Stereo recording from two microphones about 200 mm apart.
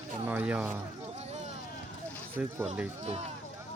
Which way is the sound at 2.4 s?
5° right (ahead or behind).